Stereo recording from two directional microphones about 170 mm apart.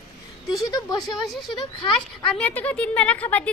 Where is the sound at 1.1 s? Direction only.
Centre (ahead or behind).